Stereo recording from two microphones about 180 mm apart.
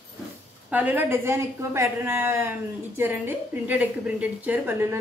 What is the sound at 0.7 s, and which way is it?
A woman's voice, 10° right (ahead or behind).